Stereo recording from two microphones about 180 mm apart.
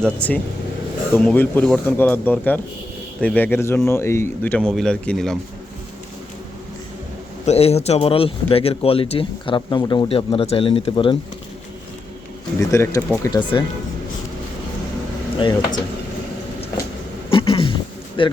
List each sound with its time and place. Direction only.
0.0 s speech: 5° left (ahead or behind)
7.4 s speech: 35° left (ahead or behind)
12.5 s speech: 15° left (ahead or behind)
15.4 s speech: 25° left (ahead or behind)
17.2 s a sound: 30° left (ahead or behind)
18.2 s speech: 30° left (ahead or behind)